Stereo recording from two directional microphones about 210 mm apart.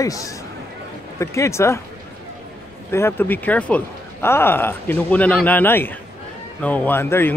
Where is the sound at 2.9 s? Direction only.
10° left (ahead or behind).